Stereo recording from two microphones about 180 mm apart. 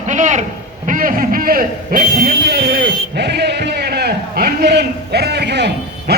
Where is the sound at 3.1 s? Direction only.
65° right (ahead or behind).